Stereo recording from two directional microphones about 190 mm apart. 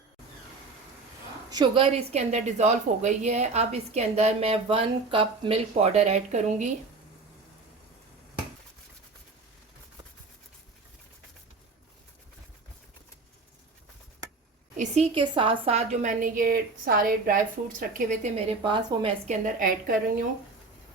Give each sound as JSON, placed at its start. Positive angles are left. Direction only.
{"t": 1.5, "sound": "a woman's voice", "side_deg": -25}
{"t": 14.8, "sound": "a woman's voice", "side_deg": -35}
{"t": 18.6, "sound": "a woman's voice", "side_deg": -25}
{"t": 19.3, "sound": "a woman's voice", "side_deg": -45}